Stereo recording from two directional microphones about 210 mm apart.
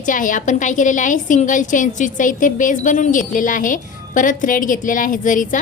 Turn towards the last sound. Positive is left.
turn(degrees=40)  # may be behind; listen again after turning